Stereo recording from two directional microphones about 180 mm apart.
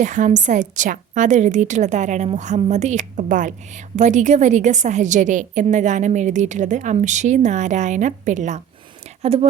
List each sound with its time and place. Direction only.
0.0 s a woman's voice: 45° right (ahead or behind)